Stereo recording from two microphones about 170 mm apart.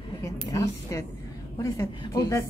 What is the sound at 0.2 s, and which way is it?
A woman's voice, 20° left (ahead or behind).